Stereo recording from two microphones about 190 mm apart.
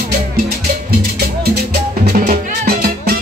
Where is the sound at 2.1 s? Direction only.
50° right (ahead or behind).